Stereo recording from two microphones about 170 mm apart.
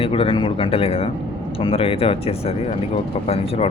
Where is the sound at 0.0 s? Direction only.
35° left (ahead or behind).